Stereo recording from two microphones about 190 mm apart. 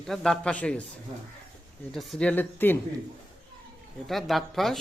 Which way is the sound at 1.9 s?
Centre (ahead or behind).